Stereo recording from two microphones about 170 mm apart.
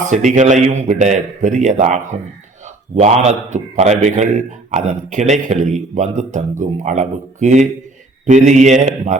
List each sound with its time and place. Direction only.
0.1 s a man's voice: 45° right (ahead or behind)